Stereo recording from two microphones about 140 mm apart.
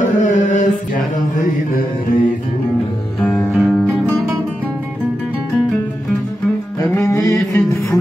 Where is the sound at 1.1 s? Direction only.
75° left (ahead or behind).